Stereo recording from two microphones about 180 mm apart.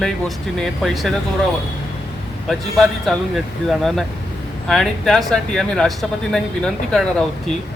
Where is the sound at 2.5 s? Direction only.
Centre (ahead or behind).